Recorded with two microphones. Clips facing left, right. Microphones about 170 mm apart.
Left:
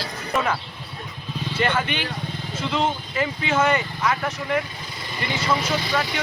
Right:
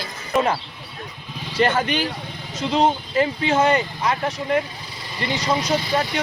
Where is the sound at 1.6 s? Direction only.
40° right (ahead or behind).